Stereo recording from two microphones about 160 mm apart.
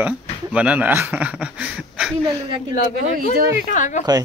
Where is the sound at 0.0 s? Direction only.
10° right (ahead or behind).